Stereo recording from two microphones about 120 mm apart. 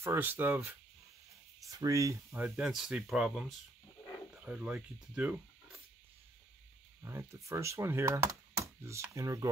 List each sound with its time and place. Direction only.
0.0 s speech: 20° right (ahead or behind)
1.6 s speech: 30° right (ahead or behind)
2.4 s speech: 5° right (ahead or behind)
7.0 s speech: 25° right (ahead or behind)